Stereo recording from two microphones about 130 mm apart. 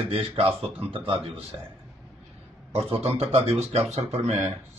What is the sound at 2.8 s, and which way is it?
Speech, 50° right (ahead or behind).